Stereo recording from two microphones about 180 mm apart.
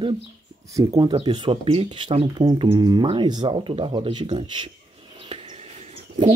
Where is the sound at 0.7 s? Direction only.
20° right (ahead or behind).